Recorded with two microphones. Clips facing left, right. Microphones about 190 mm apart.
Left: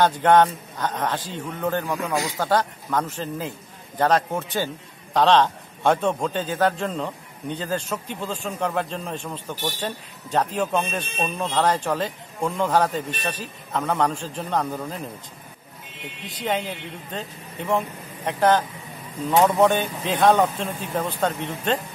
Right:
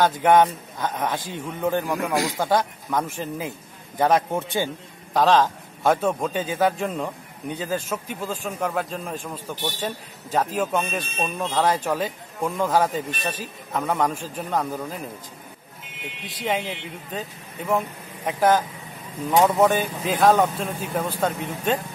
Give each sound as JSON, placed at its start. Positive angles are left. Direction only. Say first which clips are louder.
{"t": 0.0, "sound": "a man's voice", "louder": "even", "side_deg": -10}
{"t": 16.4, "sound": "a man's voice", "louder": "even", "side_deg": -5}